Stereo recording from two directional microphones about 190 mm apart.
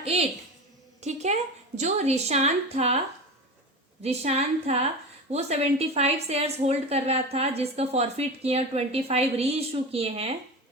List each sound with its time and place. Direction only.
0.0 s a woman's voice: 30° right (ahead or behind)
4.0 s a woman's voice: 35° right (ahead or behind)